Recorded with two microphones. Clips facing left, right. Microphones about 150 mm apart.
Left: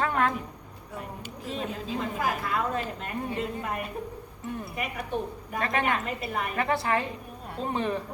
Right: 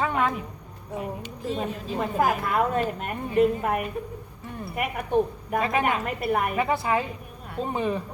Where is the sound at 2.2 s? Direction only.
55° right (ahead or behind).